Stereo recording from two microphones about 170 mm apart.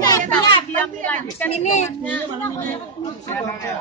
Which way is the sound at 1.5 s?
40° left (ahead or behind).